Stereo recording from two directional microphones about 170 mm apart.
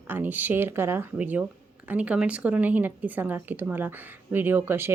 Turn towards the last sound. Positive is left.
turn(degrees=-15)  # may be behind; listen again after turning